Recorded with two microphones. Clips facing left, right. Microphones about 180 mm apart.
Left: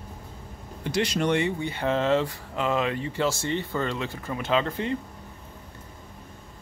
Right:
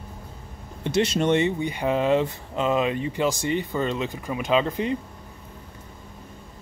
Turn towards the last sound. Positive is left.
turn(degrees=-15)  # may be behind; listen again after turning